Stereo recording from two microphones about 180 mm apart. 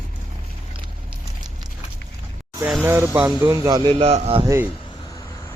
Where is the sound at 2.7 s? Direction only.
10° right (ahead or behind); by 4.4 s 35° right (ahead or behind).